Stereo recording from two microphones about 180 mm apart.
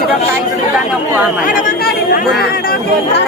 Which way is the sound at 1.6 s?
50° left (ahead or behind).